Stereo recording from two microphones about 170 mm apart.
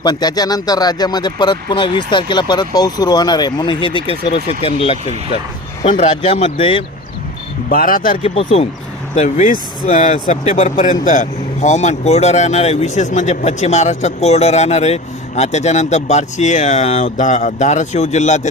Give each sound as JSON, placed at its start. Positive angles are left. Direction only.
{"t": 0.0, "sound": "speech", "side_deg": 25}
{"t": 7.7, "sound": "speech", "side_deg": 55}
{"t": 8.2, "sound": "speech", "side_deg": 35}